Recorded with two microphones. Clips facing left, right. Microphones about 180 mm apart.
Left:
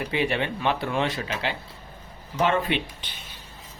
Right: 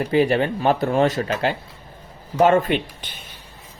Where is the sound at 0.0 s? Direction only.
40° right (ahead or behind).